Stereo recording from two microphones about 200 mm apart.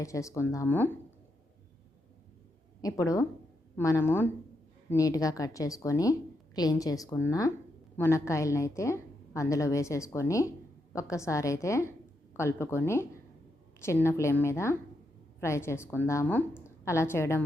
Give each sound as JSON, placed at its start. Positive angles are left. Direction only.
{"t": 0.0, "sound": "a woman's voice", "side_deg": 15}
{"t": 2.8, "sound": "a woman's voice", "side_deg": 15}